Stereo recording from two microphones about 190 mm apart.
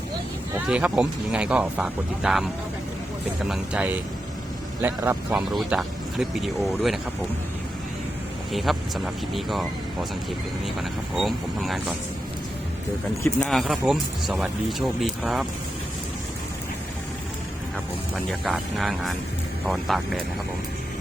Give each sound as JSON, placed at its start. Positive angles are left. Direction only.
{"t": 0.7, "sound": "speech", "side_deg": -5}
{"t": 3.4, "sound": "speech", "side_deg": -5}
{"t": 8.5, "sound": "speech", "side_deg": 0}
{"t": 13.2, "sound": "speech", "side_deg": 0}
{"t": 18.3, "sound": "speech", "side_deg": 0}